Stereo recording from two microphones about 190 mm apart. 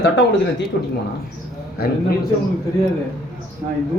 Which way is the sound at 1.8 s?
55° left (ahead or behind).